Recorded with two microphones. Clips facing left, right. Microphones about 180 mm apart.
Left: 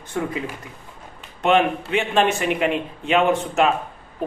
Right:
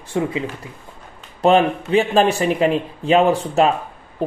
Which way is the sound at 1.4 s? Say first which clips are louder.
Right 4 dB; 35° right (ahead or behind).